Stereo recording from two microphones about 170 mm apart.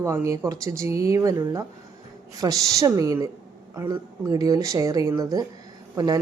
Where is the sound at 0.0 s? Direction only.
20° right (ahead or behind).